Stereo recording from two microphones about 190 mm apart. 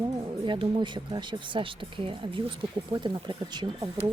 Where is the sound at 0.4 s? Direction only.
25° right (ahead or behind).